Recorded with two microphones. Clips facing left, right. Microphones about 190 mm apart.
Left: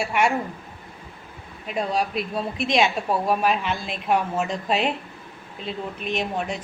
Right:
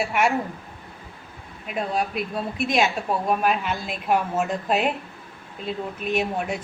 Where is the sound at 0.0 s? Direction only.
Centre (ahead or behind).